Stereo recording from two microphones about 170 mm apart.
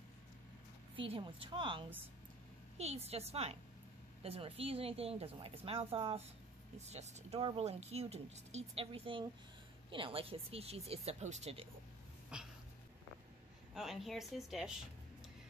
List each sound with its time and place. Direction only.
0.9 s a woman's voice: 30° right (ahead or behind)
12.3 s speech: 5° right (ahead or behind)
13.7 s speech: centre (ahead or behind)